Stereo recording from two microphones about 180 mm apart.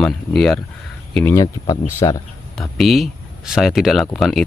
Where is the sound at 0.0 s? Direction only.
5° left (ahead or behind).